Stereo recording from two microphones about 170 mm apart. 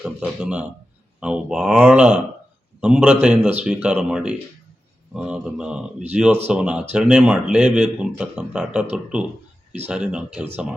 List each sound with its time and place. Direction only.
0.0 s speech: 5° right (ahead or behind)